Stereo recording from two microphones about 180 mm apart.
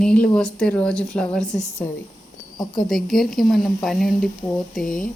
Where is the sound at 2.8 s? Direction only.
Centre (ahead or behind).